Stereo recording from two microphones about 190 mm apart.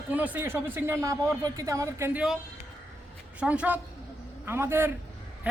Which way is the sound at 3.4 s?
5° right (ahead or behind).